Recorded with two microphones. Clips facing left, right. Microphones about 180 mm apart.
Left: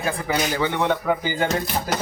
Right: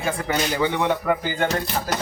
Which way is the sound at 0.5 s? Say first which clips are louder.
Right 1 dB; 10° right (ahead or behind).